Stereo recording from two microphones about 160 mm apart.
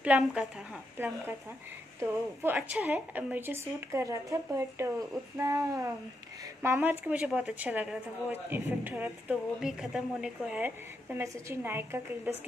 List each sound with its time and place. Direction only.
0.0 s speech: 10° right (ahead or behind)